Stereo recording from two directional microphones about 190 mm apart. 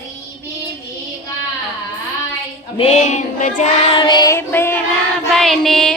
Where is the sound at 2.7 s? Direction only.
35° left (ahead or behind).